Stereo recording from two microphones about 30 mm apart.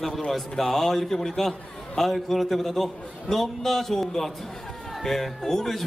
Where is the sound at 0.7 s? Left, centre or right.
Centre.